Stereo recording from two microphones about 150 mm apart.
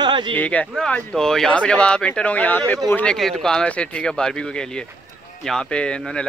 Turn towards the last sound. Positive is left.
turn(degrees=5)  # may be behind; listen again after turning